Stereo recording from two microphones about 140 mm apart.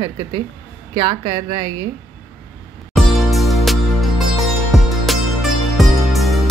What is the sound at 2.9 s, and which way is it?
Music, centre (ahead or behind).